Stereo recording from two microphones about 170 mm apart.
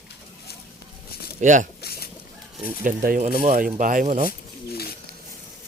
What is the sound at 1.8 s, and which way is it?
Chicken, 65° left (ahead or behind).